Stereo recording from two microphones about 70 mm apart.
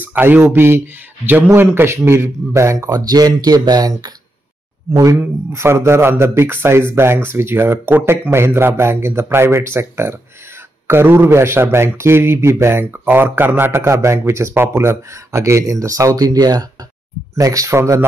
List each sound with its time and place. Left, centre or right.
0.0 s speech: right
2.9 s speech: right
4.9 s speech: right
17.4 s speech: right